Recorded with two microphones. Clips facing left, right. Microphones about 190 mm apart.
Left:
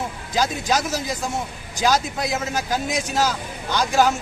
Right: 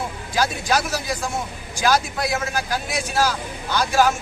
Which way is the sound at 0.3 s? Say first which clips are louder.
Even; 20° left (ahead or behind).